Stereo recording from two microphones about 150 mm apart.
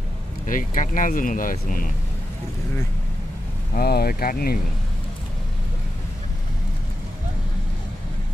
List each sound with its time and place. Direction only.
0.5 s speech: 65° left (ahead or behind)
3.7 s speech: 90° left